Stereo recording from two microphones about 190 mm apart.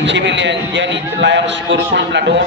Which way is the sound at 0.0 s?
70° right (ahead or behind).